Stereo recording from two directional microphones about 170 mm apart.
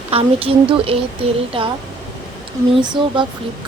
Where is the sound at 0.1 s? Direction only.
35° right (ahead or behind).